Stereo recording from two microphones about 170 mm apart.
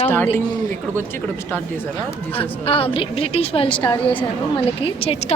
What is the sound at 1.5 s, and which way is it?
Speech, 10° left (ahead or behind).